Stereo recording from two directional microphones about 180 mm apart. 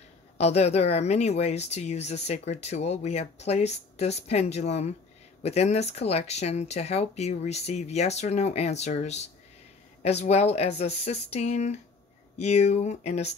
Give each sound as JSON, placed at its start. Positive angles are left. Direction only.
{"t": 0.4, "sound": "speech", "side_deg": 35}